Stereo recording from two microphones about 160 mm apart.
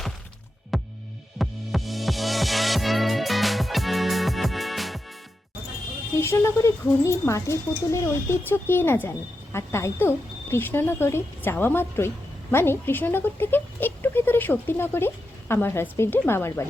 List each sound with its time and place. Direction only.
0.7 s music: centre (ahead or behind)
6.1 s speech: 15° left (ahead or behind)